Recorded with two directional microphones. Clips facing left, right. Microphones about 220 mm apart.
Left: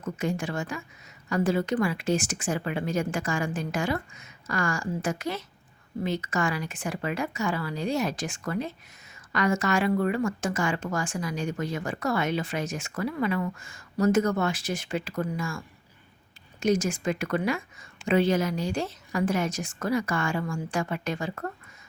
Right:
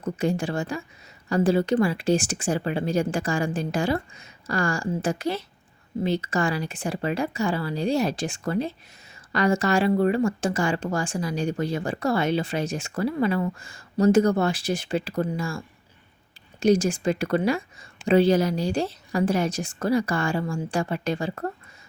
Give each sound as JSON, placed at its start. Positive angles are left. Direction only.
{"t": 0.0, "sound": "speech", "side_deg": -30}